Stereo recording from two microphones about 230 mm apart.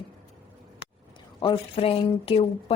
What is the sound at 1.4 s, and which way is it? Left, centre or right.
A woman's voice, left.